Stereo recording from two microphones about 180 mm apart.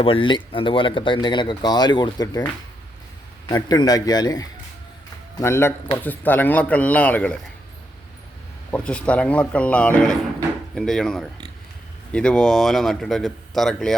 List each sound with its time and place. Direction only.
0.0 s speech: 30° left (ahead or behind)
3.5 s a man's voice: 20° left (ahead or behind)
8.7 s a man's voice: 5° left (ahead or behind)